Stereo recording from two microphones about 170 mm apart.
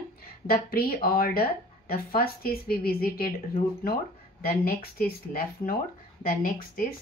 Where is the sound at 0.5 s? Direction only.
60° left (ahead or behind).